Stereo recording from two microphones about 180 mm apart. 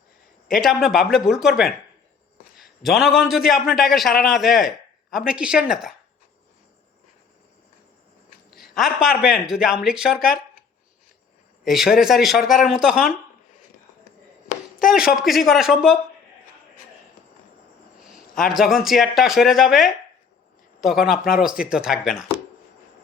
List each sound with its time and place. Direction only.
0.5 s a man's voice: centre (ahead or behind)
8.5 s a man's voice: centre (ahead or behind)
11.6 s a man's voice: centre (ahead or behind)
14.5 s a sound: 50° left (ahead or behind)
14.9 s a man's voice: centre (ahead or behind)
18.4 s a man's voice: centre (ahead or behind)